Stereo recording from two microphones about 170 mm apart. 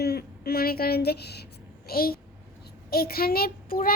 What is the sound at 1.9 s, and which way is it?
A child's voice, 60° left (ahead or behind).